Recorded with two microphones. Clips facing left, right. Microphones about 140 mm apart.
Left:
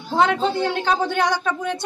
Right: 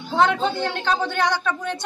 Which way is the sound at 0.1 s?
Centre (ahead or behind).